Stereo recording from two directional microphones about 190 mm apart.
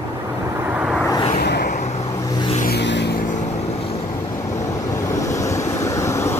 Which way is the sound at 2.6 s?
60° left (ahead or behind).